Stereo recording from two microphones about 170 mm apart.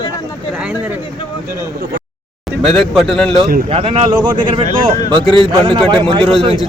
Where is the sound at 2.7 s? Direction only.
Centre (ahead or behind).